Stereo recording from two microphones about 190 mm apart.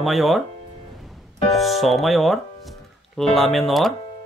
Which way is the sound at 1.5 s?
Centre (ahead or behind).